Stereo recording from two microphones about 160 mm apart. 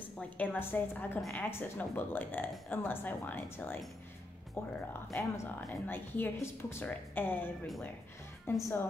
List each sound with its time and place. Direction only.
0.4 s a woman's voice: 10° left (ahead or behind)